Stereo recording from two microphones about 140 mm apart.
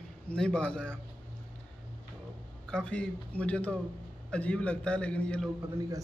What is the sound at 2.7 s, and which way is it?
A man's voice, 5° left (ahead or behind).